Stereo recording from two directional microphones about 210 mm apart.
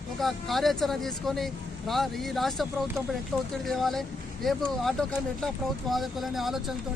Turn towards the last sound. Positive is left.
turn(degrees=0)  # may be behind; listen again after turning